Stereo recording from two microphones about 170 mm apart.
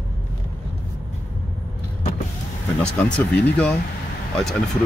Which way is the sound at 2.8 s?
5° left (ahead or behind).